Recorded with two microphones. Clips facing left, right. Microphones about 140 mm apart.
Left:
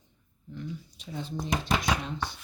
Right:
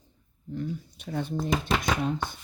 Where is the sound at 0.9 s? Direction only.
60° right (ahead or behind).